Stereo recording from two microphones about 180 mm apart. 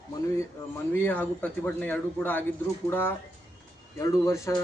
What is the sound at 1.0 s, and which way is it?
A man's voice, 10° left (ahead or behind).